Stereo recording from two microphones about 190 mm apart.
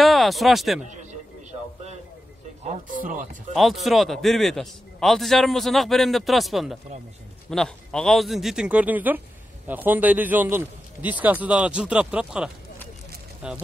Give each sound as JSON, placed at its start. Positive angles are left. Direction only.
{"t": 0.0, "sound": "speech", "side_deg": 0}
{"t": 3.0, "sound": "speech", "side_deg": -45}
{"t": 3.5, "sound": "a man's voice", "side_deg": 0}